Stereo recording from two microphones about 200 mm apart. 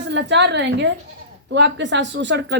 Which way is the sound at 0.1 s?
65° right (ahead or behind).